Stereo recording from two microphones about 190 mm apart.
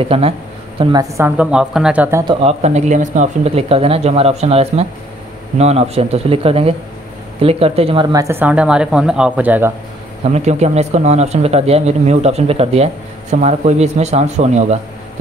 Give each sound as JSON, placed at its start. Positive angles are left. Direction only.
{"t": 0.0, "sound": "speech", "side_deg": -30}
{"t": 0.7, "sound": "speech", "side_deg": -20}
{"t": 2.4, "sound": "speech", "side_deg": -35}
{"t": 10.2, "sound": "speech", "side_deg": -35}